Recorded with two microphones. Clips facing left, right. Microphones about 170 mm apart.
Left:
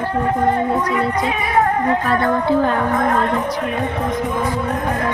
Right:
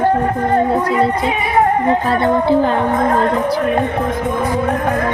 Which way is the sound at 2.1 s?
30° right (ahead or behind).